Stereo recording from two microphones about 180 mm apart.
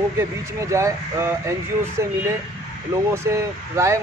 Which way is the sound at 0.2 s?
15° right (ahead or behind).